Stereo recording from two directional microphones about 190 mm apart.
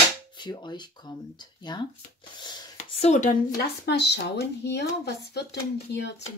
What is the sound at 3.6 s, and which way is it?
Speech, 60° left (ahead or behind).